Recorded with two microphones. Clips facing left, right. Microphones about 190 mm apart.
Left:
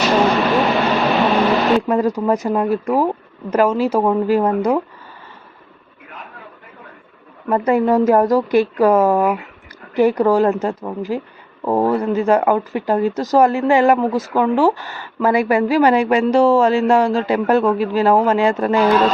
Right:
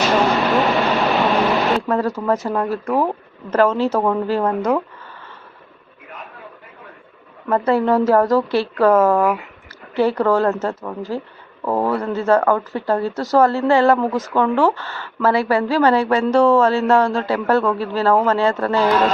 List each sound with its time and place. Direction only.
0.3 s vehicle: centre (ahead or behind)
1.2 s a sound: centre (ahead or behind)
1.9 s a woman's voice: 15° left (ahead or behind)
7.5 s a woman's voice: 15° left (ahead or behind)